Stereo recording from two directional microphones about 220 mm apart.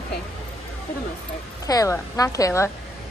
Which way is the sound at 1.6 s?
15° left (ahead or behind).